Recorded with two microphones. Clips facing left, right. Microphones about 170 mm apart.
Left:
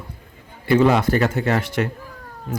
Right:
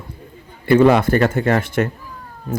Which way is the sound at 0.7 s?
55° right (ahead or behind).